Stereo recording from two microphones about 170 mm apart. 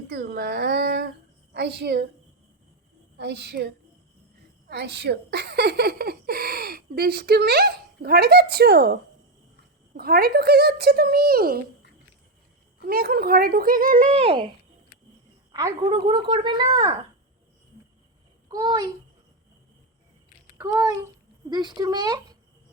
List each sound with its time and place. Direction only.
0.1 s a woman's voice: 65° right (ahead or behind)
3.2 s a woman's voice: 80° right
4.7 s speech: 80° right; by 11.6 s 60° right (ahead or behind)
12.8 s speech: 60° right (ahead or behind)
14.2 s speech: 30° right (ahead or behind)
15.5 s speech: 20° right (ahead or behind)
18.4 s a child's voice: 25° right (ahead or behind)
20.6 s a child's voice: 15° right (ahead or behind)